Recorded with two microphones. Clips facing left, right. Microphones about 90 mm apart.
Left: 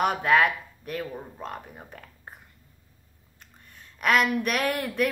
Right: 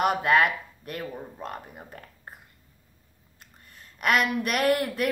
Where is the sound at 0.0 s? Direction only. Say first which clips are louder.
Even; centre (ahead or behind).